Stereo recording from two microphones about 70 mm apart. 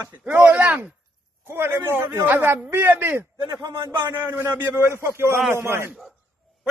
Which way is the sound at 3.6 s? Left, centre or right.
Right.